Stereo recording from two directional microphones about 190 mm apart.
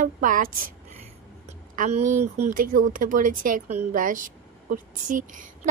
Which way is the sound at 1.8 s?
35° right (ahead or behind).